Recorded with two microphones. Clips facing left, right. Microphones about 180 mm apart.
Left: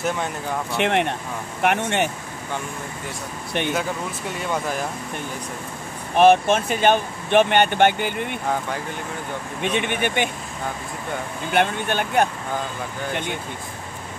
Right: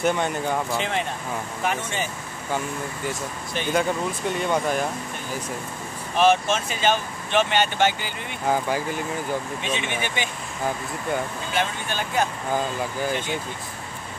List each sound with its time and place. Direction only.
0.0 s speech: centre (ahead or behind)
0.7 s speech: 65° left (ahead or behind)
4.4 s speech: centre (ahead or behind)
6.1 s speech: 55° left (ahead or behind)
8.5 s speech: 5° right (ahead or behind)
9.6 s speech: 55° left (ahead or behind)
11.5 s speech: 60° left (ahead or behind)